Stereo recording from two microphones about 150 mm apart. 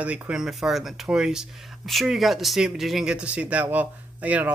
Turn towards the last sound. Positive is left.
turn(degrees=-10)  # may be behind; listen again after turning